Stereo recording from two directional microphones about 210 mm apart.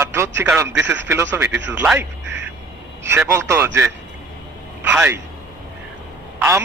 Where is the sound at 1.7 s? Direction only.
10° right (ahead or behind).